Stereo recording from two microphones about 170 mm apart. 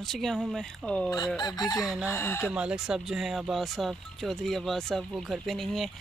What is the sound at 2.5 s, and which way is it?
Speech, 5° right (ahead or behind).